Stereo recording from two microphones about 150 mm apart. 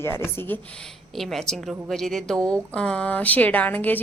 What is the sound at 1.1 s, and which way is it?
A woman's voice, centre (ahead or behind).